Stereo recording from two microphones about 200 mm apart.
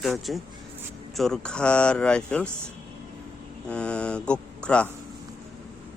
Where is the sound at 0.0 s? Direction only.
Centre (ahead or behind).